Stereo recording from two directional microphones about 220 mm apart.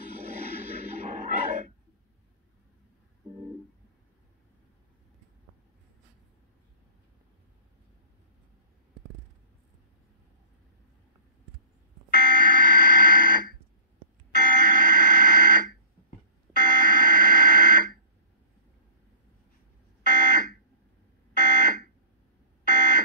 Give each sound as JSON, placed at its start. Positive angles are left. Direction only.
{"t": 0.9, "sound": "music", "side_deg": -35}
{"t": 12.3, "sound": "fire alarm", "side_deg": -40}
{"t": 20.0, "sound": "fire alarm", "side_deg": -35}